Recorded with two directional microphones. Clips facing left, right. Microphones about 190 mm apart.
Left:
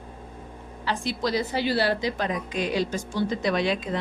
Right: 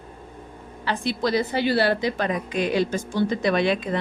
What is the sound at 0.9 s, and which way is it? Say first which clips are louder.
A woman's voice: right 3 dB; 60° right (ahead or behind).